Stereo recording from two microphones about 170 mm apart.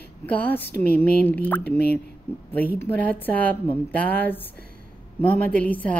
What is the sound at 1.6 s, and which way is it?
Speech, 70° left (ahead or behind).